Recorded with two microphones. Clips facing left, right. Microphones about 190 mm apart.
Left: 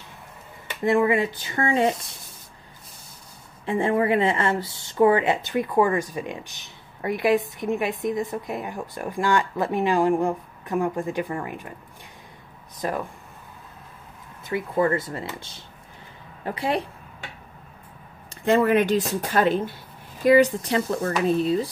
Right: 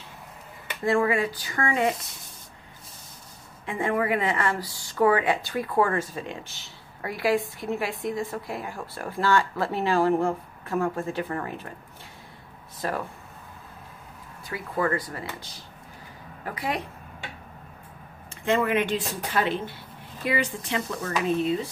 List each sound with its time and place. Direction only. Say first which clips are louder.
0.8 s speech: left 3 dB; 20° left (ahead or behind)
3.6 s speech: left 4 dB; 30° left (ahead or behind)
12.8 s speech: left 2 dB; 15° left (ahead or behind)
14.4 s speech: left 5 dB; 25° left (ahead or behind)
18.3 s speech: left 5 dB; 35° left (ahead or behind)